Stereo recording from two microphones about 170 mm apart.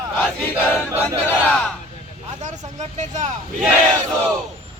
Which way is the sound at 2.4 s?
45° right (ahead or behind).